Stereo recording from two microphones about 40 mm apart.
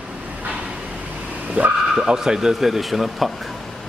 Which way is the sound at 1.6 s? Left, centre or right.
Right.